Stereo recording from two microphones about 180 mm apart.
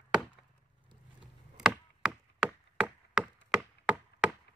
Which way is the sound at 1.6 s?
Centre (ahead or behind).